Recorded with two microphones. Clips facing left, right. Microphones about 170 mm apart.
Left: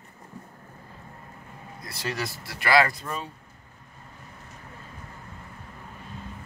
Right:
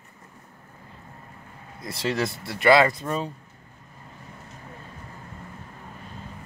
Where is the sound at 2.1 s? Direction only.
25° right (ahead or behind).